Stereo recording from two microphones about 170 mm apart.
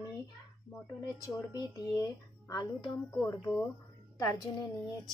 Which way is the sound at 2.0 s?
20° left (ahead or behind).